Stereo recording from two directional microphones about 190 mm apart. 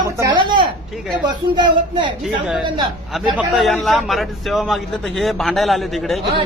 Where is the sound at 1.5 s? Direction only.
25° right (ahead or behind).